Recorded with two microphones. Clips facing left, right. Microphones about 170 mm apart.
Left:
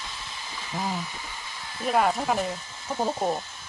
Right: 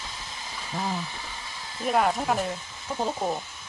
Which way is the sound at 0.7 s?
Centre (ahead or behind).